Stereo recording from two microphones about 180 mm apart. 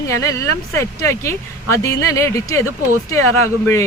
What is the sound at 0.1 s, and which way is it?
Speech, 15° left (ahead or behind).